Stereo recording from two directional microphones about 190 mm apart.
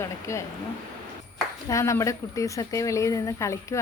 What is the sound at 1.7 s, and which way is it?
A woman's voice, 15° left (ahead or behind).